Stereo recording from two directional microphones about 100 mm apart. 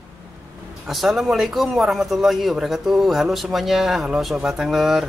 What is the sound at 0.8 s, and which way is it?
A man's voice, centre (ahead or behind).